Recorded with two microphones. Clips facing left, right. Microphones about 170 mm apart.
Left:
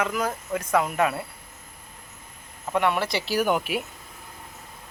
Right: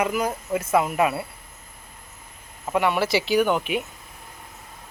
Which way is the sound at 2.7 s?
5° right (ahead or behind).